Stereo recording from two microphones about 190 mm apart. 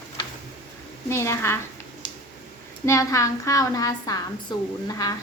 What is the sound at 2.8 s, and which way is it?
A woman's voice, 15° left (ahead or behind).